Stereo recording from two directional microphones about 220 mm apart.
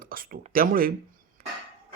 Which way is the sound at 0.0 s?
40° right (ahead or behind).